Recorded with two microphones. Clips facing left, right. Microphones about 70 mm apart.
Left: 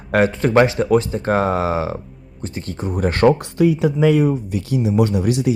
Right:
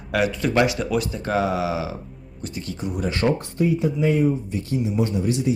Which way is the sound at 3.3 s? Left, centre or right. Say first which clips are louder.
Left 6 dB; left.